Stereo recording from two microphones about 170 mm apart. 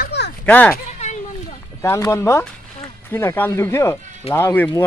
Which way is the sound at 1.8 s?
20° left (ahead or behind).